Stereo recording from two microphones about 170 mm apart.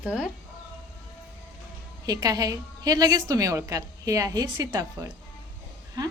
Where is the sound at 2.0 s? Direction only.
20° right (ahead or behind).